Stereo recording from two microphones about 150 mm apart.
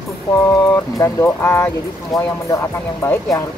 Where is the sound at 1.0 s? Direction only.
20° left (ahead or behind).